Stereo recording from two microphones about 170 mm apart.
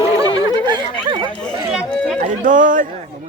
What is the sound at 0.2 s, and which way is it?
Chatter, 25° right (ahead or behind).